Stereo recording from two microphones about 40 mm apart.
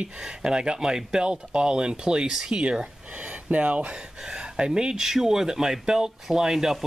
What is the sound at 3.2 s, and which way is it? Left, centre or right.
Speech, right.